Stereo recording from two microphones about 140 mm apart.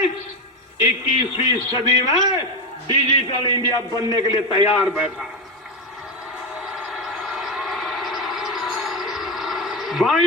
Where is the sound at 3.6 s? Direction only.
25° left (ahead or behind).